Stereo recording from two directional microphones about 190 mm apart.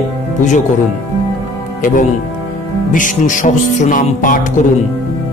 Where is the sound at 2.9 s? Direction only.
45° left (ahead or behind).